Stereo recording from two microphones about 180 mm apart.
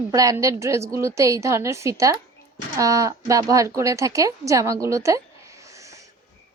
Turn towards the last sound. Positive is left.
turn(degrees=-15)  # may be behind; listen again after turning